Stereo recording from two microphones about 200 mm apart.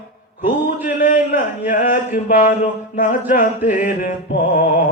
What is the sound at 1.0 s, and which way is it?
Music, 40° left (ahead or behind).